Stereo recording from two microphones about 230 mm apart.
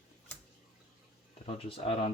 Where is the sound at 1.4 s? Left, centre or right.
Left.